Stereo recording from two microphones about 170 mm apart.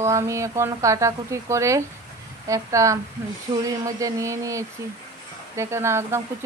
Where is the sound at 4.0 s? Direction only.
20° right (ahead or behind).